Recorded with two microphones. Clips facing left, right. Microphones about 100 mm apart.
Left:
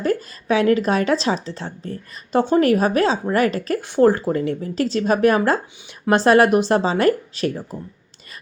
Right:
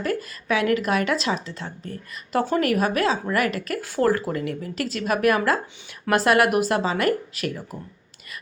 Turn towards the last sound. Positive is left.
turn(degrees=30)  # may be behind; listen again after turning